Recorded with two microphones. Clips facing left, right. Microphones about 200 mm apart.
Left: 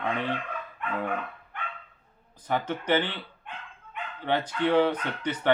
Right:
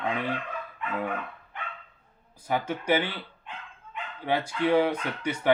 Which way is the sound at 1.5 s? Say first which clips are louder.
Left 1 dB; 55° left (ahead or behind).